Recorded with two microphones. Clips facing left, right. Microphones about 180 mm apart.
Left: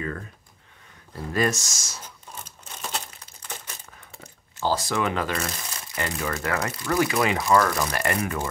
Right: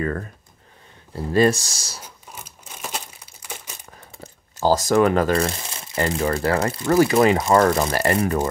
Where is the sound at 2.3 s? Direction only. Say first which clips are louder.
Even; 10° right (ahead or behind).